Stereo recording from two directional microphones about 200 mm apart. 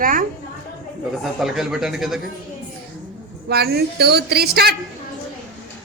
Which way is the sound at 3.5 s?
55° right (ahead or behind).